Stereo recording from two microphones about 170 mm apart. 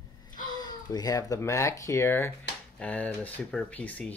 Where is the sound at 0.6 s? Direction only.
25° left (ahead or behind).